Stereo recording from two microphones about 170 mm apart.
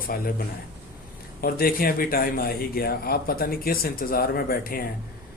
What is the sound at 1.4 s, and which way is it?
Speech, 60° left (ahead or behind).